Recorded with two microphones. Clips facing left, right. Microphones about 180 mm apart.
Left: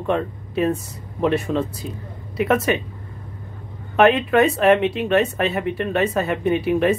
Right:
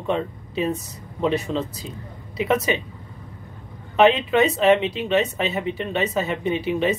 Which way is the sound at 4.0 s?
Centre (ahead or behind).